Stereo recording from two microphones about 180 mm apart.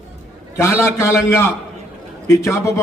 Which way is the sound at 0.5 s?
15° left (ahead or behind).